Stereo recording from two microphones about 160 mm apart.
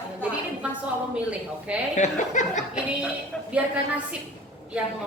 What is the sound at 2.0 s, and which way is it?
Speech, 50° left (ahead or behind).